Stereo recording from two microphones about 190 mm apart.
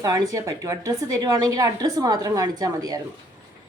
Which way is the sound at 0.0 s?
20° right (ahead or behind).